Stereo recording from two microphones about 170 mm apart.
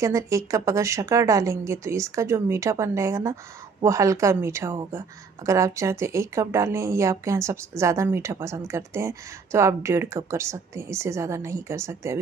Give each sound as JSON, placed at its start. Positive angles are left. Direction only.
{"t": 0.0, "sound": "a woman's voice", "side_deg": -20}